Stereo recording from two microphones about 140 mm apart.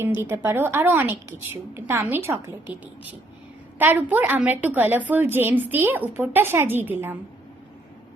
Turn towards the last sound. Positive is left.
turn(degrees=-15)  # may be behind; listen again after turning